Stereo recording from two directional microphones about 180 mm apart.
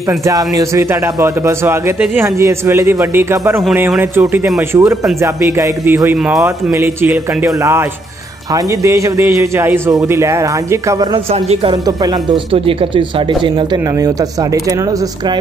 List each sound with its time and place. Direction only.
0.2 s speech: 15° right (ahead or behind)
8.8 s speech: 15° right (ahead or behind)
12.5 s speech: 30° right (ahead or behind)